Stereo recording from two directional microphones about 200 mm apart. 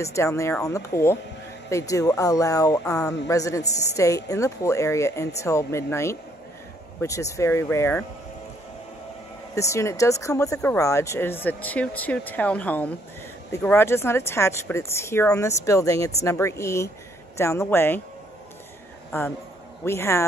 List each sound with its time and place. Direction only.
0.0 s speech: 15° left (ahead or behind)
9.6 s speech: 15° left (ahead or behind)
19.8 s speech: 15° left (ahead or behind)